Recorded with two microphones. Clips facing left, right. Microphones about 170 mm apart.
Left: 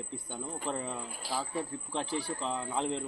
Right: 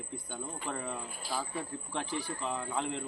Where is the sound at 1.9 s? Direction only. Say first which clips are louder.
Left 2 dB; 30° left (ahead or behind).